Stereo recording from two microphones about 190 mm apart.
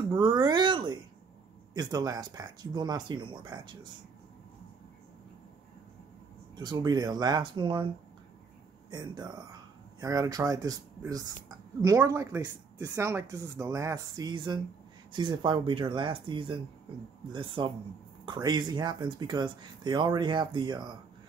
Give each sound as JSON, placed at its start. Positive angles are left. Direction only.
{"t": 0.1, "sound": "a sound", "side_deg": -25}
{"t": 1.7, "sound": "speech", "side_deg": -20}
{"t": 6.5, "sound": "speech", "side_deg": -20}
{"t": 8.9, "sound": "speech", "side_deg": -20}